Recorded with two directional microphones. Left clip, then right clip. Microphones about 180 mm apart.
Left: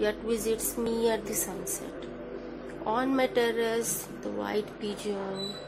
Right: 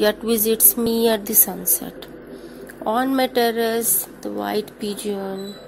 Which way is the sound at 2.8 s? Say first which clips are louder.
Right 7 dB; 40° right (ahead or behind).